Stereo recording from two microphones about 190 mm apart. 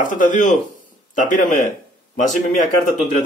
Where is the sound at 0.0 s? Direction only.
45° left (ahead or behind).